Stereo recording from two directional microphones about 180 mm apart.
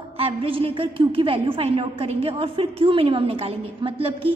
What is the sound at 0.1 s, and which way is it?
A woman's voice, 30° right (ahead or behind).